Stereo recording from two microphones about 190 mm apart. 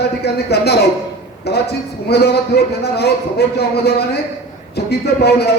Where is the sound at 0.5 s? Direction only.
60° left (ahead or behind).